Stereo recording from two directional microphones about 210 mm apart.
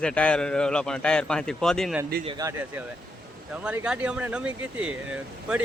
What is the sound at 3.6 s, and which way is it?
Speech, 5° right (ahead or behind).